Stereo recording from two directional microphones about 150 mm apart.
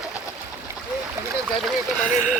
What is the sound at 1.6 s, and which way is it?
Speech, 5° left (ahead or behind).